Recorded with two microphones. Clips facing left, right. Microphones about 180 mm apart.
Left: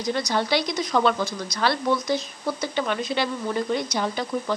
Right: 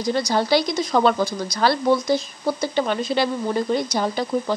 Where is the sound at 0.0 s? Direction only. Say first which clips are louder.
Right 3 dB; 30° right (ahead or behind).